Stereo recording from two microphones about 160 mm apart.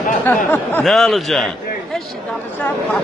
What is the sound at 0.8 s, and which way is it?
Speech, centre (ahead or behind).